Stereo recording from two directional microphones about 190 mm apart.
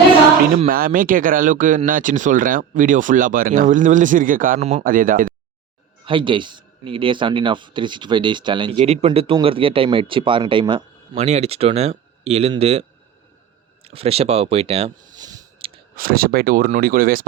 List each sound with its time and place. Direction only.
0.7 s speech: 50° right (ahead or behind)
6.1 s speech: 25° right (ahead or behind)
13.8 s speech: 30° right (ahead or behind)
15.1 s a sound: 20° right (ahead or behind)
16.0 s speech: 50° right (ahead or behind)